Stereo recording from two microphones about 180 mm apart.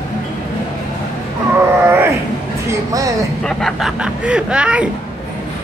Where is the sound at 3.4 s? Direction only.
Centre (ahead or behind).